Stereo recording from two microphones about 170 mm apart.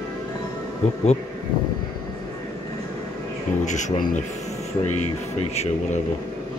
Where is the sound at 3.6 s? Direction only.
45° left (ahead or behind).